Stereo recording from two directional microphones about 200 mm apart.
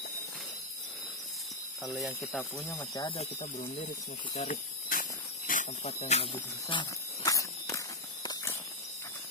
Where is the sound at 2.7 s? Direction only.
20° left (ahead or behind).